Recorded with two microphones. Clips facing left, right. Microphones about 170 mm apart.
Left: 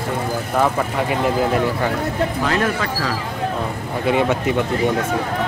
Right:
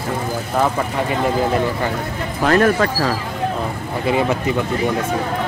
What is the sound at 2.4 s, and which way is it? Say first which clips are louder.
Speech: right 5 dB; 50° right (ahead or behind).